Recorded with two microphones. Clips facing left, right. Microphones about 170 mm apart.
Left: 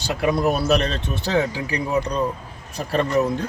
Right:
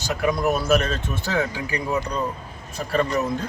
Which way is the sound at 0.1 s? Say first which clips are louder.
Left 2 dB; 30° left (ahead or behind).